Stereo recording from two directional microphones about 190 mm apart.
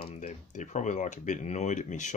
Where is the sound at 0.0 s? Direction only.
35° left (ahead or behind).